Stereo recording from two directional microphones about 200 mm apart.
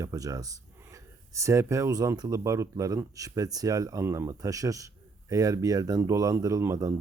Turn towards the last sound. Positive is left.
turn(degrees=-15)  # may be behind; listen again after turning